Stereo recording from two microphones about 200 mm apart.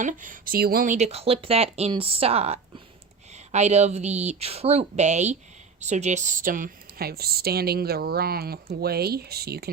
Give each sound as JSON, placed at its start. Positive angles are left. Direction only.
{"t": 0.0, "sound": "speech", "side_deg": -40}